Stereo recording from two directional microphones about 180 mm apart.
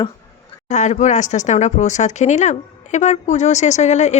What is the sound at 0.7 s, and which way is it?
Speech, 40° left (ahead or behind).